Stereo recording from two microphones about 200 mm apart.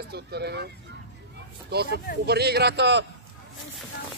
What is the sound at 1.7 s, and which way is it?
A man's voice, 55° right (ahead or behind).